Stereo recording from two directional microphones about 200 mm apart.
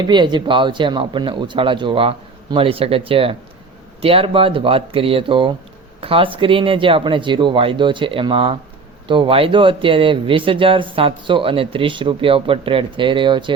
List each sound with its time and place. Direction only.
0.0 s speech: 20° right (ahead or behind)